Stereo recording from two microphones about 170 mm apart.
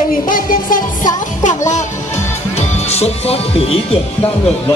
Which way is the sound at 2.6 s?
40° left (ahead or behind).